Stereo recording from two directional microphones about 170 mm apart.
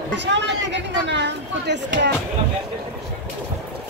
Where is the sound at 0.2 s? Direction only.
90° right.